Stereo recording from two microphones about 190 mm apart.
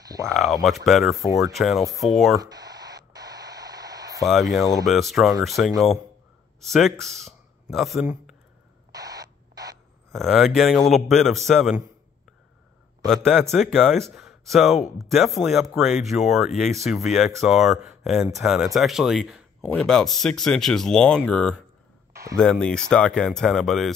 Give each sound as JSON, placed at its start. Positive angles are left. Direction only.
{"t": 0.0, "sound": "a sound", "side_deg": -20}
{"t": 0.3, "sound": "speech", "side_deg": 0}
{"t": 2.4, "sound": "a sound", "side_deg": -20}
{"t": 4.2, "sound": "speech", "side_deg": 0}
{"t": 8.9, "sound": "rodents", "side_deg": -20}
{"t": 10.1, "sound": "speech", "side_deg": 0}
{"t": 13.0, "sound": "speech", "side_deg": 0}